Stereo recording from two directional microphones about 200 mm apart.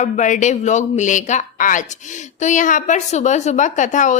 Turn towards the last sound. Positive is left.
turn(degrees=40)  # may be behind; listen again after turning